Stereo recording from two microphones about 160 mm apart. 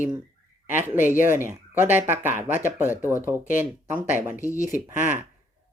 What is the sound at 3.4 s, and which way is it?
Speech, 55° left (ahead or behind).